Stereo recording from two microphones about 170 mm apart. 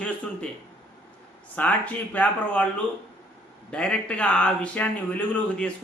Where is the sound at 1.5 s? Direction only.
10° left (ahead or behind).